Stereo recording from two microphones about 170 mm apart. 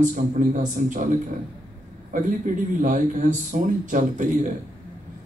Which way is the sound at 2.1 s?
50° right (ahead or behind).